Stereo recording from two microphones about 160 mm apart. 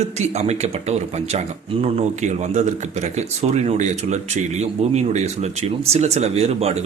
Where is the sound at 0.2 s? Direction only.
45° right (ahead or behind).